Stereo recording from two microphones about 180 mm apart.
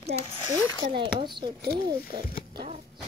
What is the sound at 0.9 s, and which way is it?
Speech, 25° right (ahead or behind).